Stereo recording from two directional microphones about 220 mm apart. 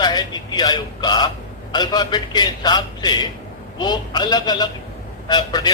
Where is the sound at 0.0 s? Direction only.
20° left (ahead or behind).